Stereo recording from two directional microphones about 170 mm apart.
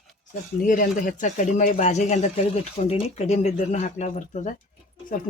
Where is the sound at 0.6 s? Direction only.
50° left (ahead or behind).